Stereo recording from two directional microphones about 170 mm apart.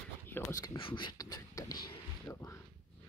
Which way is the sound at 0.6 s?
30° left (ahead or behind).